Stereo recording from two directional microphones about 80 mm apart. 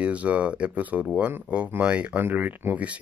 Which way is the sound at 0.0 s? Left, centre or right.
Centre.